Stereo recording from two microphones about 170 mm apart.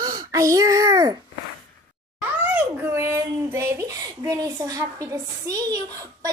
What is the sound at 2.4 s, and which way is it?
A child's voice, 10° right (ahead or behind).